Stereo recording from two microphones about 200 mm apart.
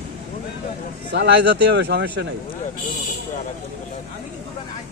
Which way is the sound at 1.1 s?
55° right (ahead or behind).